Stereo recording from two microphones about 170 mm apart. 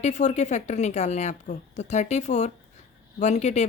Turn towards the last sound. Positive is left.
turn(degrees=40)  # may be behind; listen again after turning